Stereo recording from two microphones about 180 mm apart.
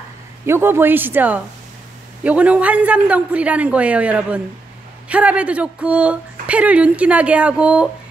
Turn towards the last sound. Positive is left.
turn(degrees=-5)  # may be behind; listen again after turning